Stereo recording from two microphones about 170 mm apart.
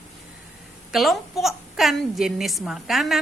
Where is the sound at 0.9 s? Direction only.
Centre (ahead or behind).